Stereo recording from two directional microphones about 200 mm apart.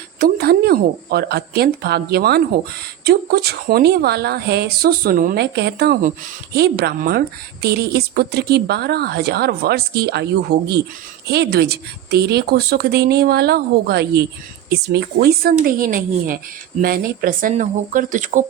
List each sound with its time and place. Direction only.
0.2 s speech: 50° right (ahead or behind)